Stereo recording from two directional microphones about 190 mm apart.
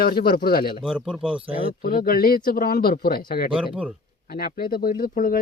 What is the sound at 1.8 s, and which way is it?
Speech, 50° left (ahead or behind).